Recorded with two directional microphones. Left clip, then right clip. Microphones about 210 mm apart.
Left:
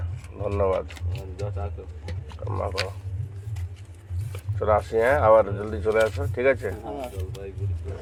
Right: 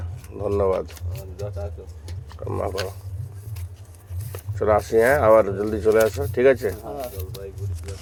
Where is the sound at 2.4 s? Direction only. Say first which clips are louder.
Right 3 dB; 60° right (ahead or behind).